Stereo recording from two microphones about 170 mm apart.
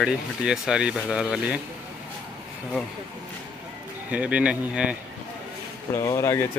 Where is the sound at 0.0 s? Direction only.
5° right (ahead or behind).